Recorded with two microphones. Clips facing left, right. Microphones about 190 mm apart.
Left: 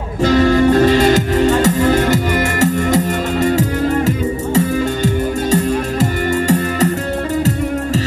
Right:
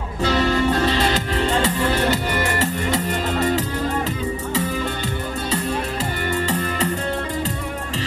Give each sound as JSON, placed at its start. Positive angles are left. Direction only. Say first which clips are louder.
{"t": 0.2, "sound": "music", "louder": "left 8 dB", "side_deg": 45}